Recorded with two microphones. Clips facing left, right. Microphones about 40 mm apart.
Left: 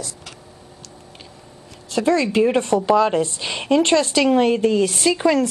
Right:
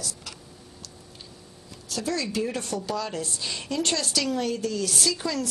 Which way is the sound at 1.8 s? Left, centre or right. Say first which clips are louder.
Left 11 dB; left.